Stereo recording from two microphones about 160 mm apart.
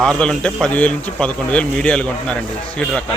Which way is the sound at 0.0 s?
5° left (ahead or behind).